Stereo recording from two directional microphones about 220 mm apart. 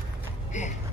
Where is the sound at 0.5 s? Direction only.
35° left (ahead or behind).